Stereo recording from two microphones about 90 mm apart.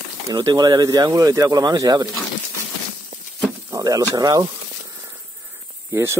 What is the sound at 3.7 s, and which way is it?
Speech, 40° right (ahead or behind).